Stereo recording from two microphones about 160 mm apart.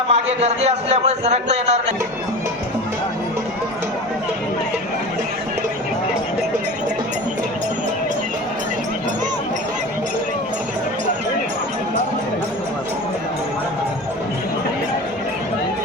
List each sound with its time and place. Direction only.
0.1 s a man's voice: 45° right (ahead or behind)